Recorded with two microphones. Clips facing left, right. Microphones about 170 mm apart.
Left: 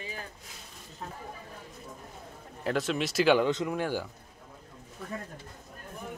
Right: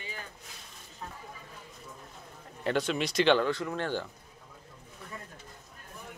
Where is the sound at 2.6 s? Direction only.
Centre (ahead or behind).